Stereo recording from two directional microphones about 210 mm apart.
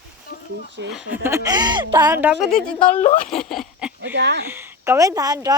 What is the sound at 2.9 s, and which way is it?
Speech, 35° left (ahead or behind).